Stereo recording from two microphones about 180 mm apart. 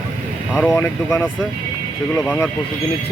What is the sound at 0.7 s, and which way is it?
Speech, 15° left (ahead or behind).